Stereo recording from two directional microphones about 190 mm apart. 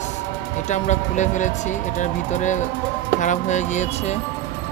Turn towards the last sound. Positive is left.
turn(degrees=40)  # may be behind; listen again after turning